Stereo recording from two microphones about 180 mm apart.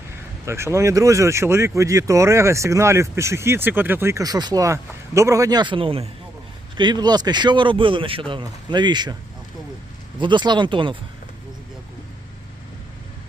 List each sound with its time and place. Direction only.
0.4 s speech: 15° right (ahead or behind)
10.2 s speech: 25° right (ahead or behind)